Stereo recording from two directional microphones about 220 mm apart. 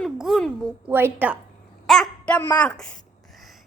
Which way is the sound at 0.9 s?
10° right (ahead or behind).